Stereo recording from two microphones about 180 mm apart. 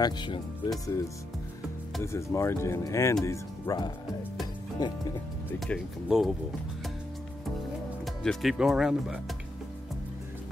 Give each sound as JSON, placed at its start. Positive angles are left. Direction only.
{"t": 0.0, "sound": "speech", "side_deg": 25}
{"t": 5.8, "sound": "speech", "side_deg": -5}
{"t": 8.0, "sound": "speech", "side_deg": 0}